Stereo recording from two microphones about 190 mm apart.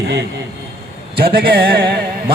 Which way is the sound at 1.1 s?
55° right (ahead or behind).